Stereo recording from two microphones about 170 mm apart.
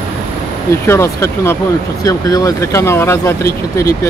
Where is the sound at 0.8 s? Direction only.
15° left (ahead or behind).